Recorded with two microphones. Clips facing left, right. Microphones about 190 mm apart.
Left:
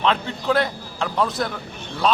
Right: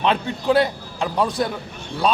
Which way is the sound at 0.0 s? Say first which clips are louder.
Right 1 dB; 15° right (ahead or behind).